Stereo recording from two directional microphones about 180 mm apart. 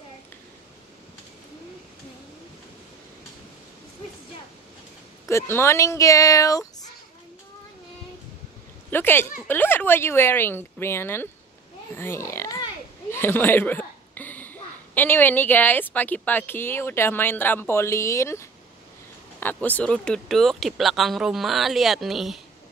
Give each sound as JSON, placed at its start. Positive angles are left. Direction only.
{"t": 5.3, "sound": "speech", "side_deg": 15}
{"t": 8.9, "sound": "speech", "side_deg": 10}